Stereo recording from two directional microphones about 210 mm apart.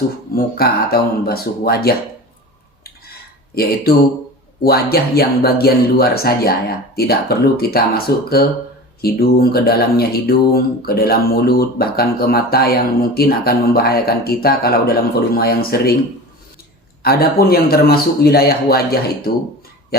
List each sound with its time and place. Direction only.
0.3 s speech: 45° left (ahead or behind)
3.5 s speech: 45° left (ahead or behind)
17.0 s speech: 45° left (ahead or behind)